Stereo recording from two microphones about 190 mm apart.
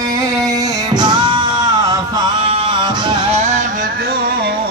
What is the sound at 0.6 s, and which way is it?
Music, 20° right (ahead or behind).